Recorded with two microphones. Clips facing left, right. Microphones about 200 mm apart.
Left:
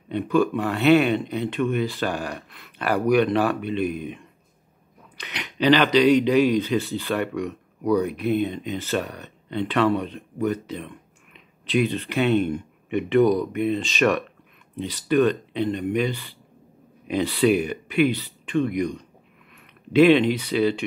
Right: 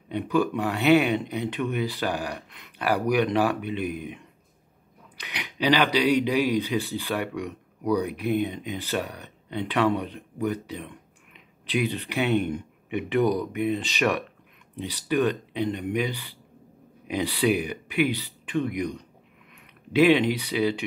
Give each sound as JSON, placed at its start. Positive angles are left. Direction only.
{"t": 0.1, "sound": "speech", "side_deg": -15}